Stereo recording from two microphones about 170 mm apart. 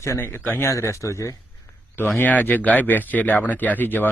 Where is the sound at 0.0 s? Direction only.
15° left (ahead or behind).